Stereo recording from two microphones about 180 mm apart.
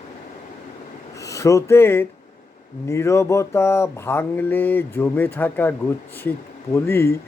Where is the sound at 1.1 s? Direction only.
15° left (ahead or behind).